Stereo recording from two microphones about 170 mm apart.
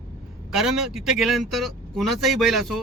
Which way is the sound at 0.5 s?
5° right (ahead or behind).